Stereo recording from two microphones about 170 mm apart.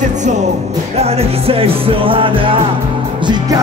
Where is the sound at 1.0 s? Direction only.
35° right (ahead or behind).